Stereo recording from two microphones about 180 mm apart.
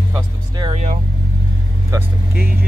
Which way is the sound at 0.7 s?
40° right (ahead or behind).